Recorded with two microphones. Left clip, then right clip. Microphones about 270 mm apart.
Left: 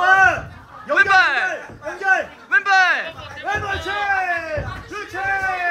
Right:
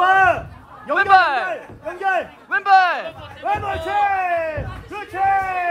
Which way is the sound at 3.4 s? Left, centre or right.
Right.